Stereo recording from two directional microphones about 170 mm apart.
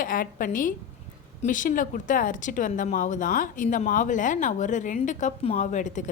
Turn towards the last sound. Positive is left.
turn(degrees=45)  # may be behind; listen again after turning